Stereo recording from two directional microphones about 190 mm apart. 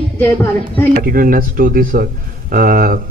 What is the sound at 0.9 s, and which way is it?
A man's voice, 50° right (ahead or behind).